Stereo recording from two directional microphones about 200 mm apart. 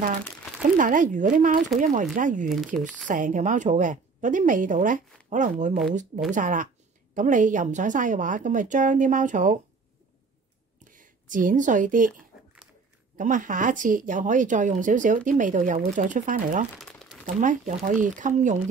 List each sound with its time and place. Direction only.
0.7 s speech: 40° right (ahead or behind)
2.5 s speech: centre (ahead or behind)
3.1 s speech: 40° right (ahead or behind)
10.8 s a sound: 40° right (ahead or behind)
13.2 s speech: 40° right (ahead or behind)
16.7 s crumpling: centre (ahead or behind)
17.4 s speech: 40° right (ahead or behind)